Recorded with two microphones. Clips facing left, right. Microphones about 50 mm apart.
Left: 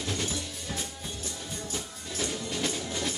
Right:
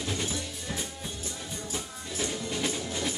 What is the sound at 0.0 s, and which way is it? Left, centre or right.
Music, centre.